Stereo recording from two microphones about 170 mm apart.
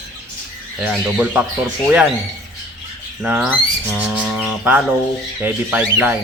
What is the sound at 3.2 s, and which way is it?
Speech, 5° right (ahead or behind).